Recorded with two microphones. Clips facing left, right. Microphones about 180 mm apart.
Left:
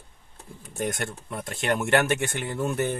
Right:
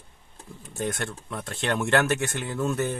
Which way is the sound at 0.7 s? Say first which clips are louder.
Left 1 dB; 15° left (ahead or behind).